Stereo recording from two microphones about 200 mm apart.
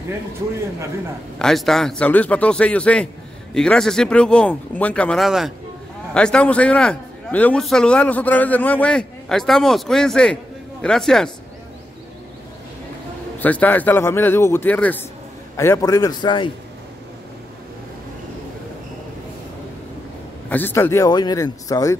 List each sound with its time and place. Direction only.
1.4 s a man's voice: centre (ahead or behind)
13.4 s a man's voice: 10° left (ahead or behind)
20.4 s a man's voice: 10° left (ahead or behind)